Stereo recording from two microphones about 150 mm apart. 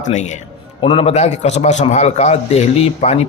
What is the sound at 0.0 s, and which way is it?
Speech, 50° left (ahead or behind).